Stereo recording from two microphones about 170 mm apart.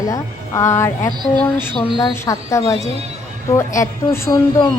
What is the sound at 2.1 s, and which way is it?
A woman's voice, 15° left (ahead or behind).